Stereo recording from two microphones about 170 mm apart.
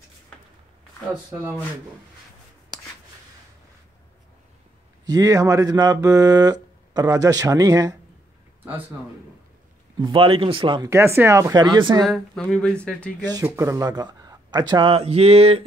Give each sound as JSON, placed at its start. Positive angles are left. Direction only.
{"t": 5.0, "sound": "speech", "side_deg": -20}
{"t": 9.9, "sound": "speech", "side_deg": -25}
{"t": 10.9, "sound": "speech", "side_deg": -15}
{"t": 12.0, "sound": "speech", "side_deg": 0}
{"t": 13.2, "sound": "speech", "side_deg": -20}